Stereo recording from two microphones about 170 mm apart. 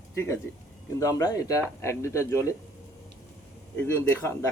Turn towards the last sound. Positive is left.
turn(degrees=15)  # may be behind; listen again after turning